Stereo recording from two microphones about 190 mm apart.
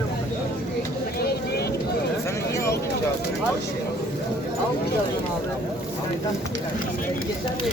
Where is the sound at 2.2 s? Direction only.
15° left (ahead or behind).